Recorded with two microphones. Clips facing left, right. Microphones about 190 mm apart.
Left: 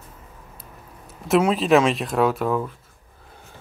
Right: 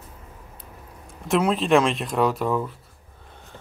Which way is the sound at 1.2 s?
Centre (ahead or behind).